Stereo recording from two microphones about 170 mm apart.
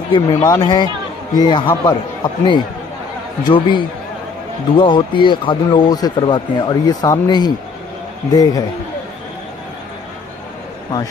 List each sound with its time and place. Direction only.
0.1 s speech: 25° left (ahead or behind)
3.4 s speech: 30° left (ahead or behind)